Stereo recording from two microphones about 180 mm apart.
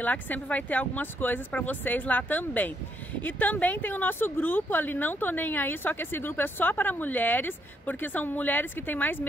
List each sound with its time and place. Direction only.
0.0 s speech: 10° left (ahead or behind)